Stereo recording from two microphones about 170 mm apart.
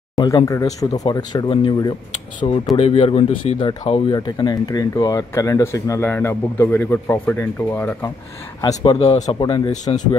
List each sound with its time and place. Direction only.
0.1 s a sound: 20° left (ahead or behind)
0.5 s speech: 20° left (ahead or behind)
8.5 s speech: 20° left (ahead or behind)